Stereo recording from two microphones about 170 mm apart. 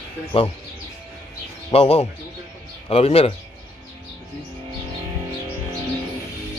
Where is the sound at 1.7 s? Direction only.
35° left (ahead or behind).